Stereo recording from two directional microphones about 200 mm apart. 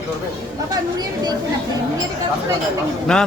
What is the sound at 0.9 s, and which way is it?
Speech, 20° right (ahead or behind).